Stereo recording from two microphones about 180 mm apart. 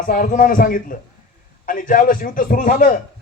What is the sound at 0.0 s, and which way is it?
A man's voice, 50° left (ahead or behind).